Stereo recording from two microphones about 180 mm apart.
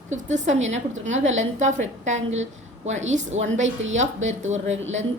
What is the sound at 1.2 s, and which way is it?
Speech, 90° right.